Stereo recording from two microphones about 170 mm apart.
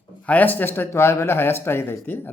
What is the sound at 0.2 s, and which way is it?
A man's voice, 10° left (ahead or behind).